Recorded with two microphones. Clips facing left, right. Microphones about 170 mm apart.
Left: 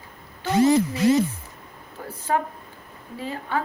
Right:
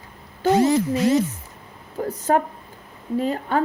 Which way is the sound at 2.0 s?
45° right (ahead or behind).